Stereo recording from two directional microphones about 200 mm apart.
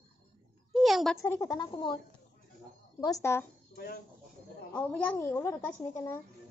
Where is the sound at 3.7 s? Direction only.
50° left (ahead or behind).